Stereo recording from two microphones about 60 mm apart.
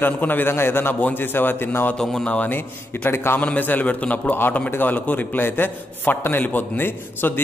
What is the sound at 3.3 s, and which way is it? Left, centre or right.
A man's voice, left.